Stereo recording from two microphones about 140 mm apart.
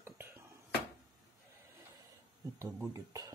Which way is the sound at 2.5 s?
20° right (ahead or behind).